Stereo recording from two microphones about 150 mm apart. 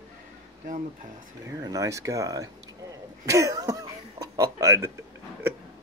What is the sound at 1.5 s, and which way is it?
Speech, 25° right (ahead or behind).